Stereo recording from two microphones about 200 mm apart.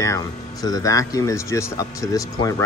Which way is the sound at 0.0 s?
15° left (ahead or behind).